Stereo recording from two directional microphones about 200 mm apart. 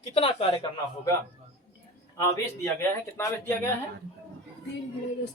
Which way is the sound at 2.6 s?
15° left (ahead or behind).